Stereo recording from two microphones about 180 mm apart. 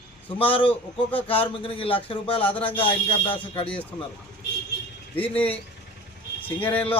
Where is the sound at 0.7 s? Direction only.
10° left (ahead or behind).